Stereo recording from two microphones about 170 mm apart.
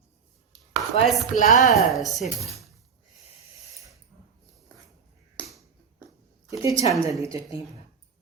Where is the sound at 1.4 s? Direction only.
45° left (ahead or behind).